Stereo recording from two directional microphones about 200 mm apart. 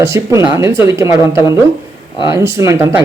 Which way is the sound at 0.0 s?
15° right (ahead or behind).